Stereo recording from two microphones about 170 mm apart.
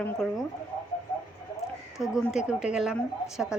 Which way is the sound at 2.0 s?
Centre (ahead or behind).